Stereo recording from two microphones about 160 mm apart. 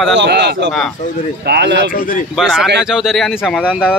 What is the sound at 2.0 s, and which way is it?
Speech, 60° left (ahead or behind).